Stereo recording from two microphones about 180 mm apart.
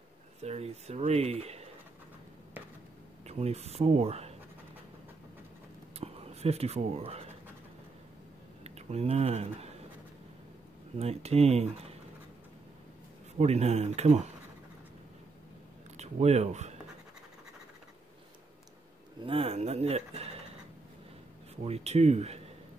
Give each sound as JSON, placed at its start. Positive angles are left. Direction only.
{"t": 0.4, "sound": "speech", "side_deg": -35}
{"t": 3.3, "sound": "speech", "side_deg": -35}
{"t": 5.9, "sound": "a sound", "side_deg": -35}
{"t": 8.6, "sound": "speech", "side_deg": -35}
{"t": 11.0, "sound": "speech", "side_deg": -35}
{"t": 13.4, "sound": "speech", "side_deg": -35}
{"t": 16.0, "sound": "speech", "side_deg": -35}
{"t": 19.2, "sound": "speech", "side_deg": -30}
{"t": 21.6, "sound": "speech", "side_deg": -35}